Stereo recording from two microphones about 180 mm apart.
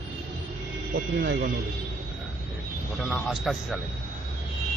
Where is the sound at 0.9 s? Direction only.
60° right (ahead or behind).